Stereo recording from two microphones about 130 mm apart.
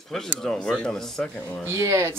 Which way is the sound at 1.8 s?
25° right (ahead or behind).